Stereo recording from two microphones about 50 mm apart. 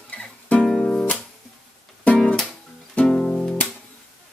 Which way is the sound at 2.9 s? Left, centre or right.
Centre.